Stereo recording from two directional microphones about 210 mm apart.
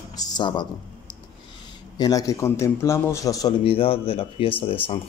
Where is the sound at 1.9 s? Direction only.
20° left (ahead or behind).